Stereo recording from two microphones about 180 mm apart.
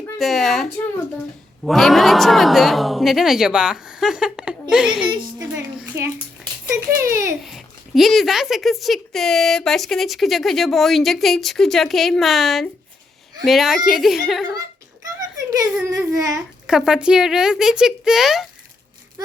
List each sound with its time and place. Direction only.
0.2 s a child's voice: centre (ahead or behind); by 7.3 s 15° right (ahead or behind)
7.4 s speech: centre (ahead or behind)
15.4 s speech: 20° right (ahead or behind)
16.6 s speech: 5° right (ahead or behind)